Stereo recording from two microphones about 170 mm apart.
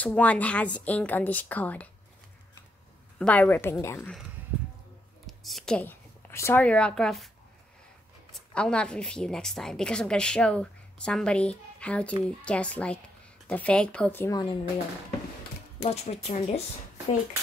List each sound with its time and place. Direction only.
0.0 s a woman's voice: 10° left (ahead or behind)
3.2 s a woman's voice: 10° left (ahead or behind)
5.2 s a woman's voice: centre (ahead or behind)
8.3 s a woman's voice: 5° left (ahead or behind)
14.3 s speech: 25° left (ahead or behind)
15.8 s speech: 35° left (ahead or behind)